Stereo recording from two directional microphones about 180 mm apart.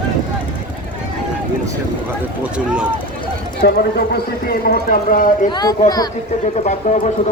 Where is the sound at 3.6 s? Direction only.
60° left (ahead or behind).